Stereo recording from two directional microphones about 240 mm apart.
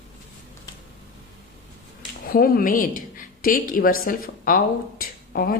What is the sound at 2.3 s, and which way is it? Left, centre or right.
A woman's voice, left.